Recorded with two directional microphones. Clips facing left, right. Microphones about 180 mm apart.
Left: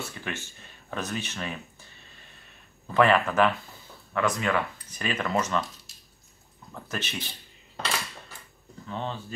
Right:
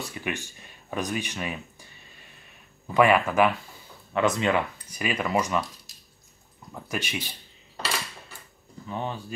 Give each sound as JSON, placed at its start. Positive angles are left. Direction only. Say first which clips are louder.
{"t": 0.0, "sound": "speech", "louder": "right 3 dB", "side_deg": -15}
{"t": 2.9, "sound": "speech", "louder": "right 1 dB", "side_deg": -10}
{"t": 4.1, "sound": "speech", "louder": "right 3 dB", "side_deg": -20}
{"t": 4.8, "sound": "speech", "louder": "right 2 dB", "side_deg": -10}
{"t": 6.7, "sound": "speech", "louder": "right 3 dB", "side_deg": -10}
{"t": 8.8, "sound": "speech", "louder": "right 2 dB", "side_deg": -10}